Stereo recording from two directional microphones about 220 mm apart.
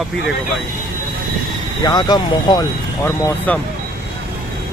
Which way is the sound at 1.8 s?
20° left (ahead or behind).